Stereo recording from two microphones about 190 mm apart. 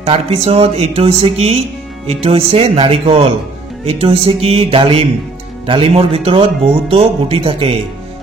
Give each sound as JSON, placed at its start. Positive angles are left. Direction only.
{"t": 0.0, "sound": "speech", "side_deg": -30}